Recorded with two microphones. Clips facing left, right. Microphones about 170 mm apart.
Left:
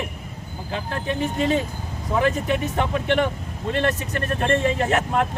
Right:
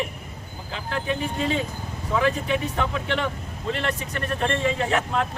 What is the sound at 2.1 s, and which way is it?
Speech, 45° left (ahead or behind).